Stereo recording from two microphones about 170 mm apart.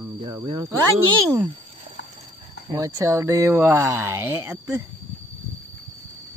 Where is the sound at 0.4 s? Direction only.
30° right (ahead or behind).